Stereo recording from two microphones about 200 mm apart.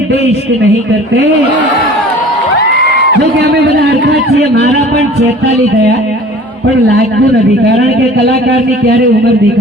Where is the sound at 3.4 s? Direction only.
55° right (ahead or behind).